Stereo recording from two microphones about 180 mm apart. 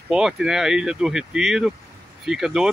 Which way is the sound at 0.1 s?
5° right (ahead or behind).